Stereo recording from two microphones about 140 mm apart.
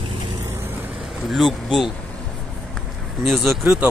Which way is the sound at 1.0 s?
Centre (ahead or behind).